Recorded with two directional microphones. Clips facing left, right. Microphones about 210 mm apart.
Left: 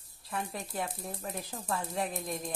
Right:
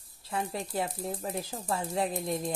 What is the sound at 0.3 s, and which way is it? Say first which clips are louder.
Speech: right 4 dB; 30° right (ahead or behind).